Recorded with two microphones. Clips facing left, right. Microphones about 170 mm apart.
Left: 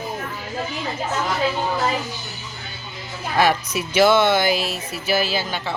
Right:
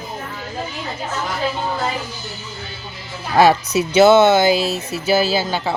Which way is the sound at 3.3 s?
30° right (ahead or behind).